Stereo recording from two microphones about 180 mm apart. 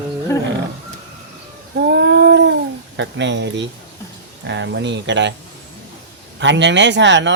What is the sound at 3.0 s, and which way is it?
Speech, 80° right.